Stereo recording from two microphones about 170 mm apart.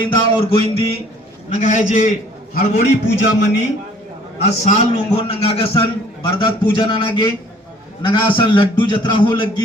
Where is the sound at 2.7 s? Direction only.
90° left.